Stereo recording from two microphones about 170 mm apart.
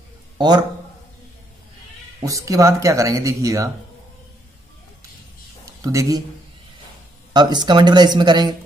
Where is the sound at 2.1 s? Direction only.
20° right (ahead or behind).